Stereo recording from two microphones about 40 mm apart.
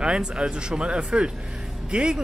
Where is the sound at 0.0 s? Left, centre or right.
Right.